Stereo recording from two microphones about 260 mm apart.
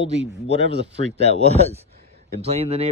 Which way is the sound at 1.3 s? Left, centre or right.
Right.